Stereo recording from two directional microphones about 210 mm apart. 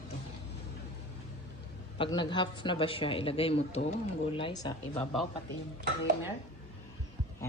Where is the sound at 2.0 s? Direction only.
20° left (ahead or behind).